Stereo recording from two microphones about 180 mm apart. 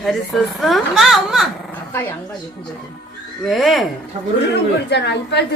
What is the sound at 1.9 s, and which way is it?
Speech, 10° left (ahead or behind).